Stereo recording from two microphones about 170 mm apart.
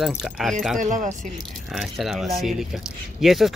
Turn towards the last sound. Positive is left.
turn(degrees=0)  # may be behind; listen again after turning